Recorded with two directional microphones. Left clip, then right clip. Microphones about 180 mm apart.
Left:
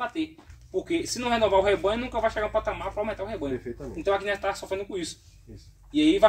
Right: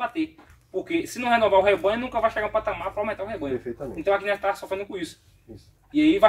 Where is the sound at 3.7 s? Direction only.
50° right (ahead or behind).